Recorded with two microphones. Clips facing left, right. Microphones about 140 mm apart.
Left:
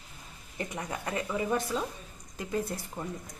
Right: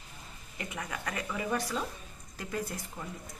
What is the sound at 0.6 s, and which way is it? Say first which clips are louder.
Speech: left 3 dB; 30° left (ahead or behind).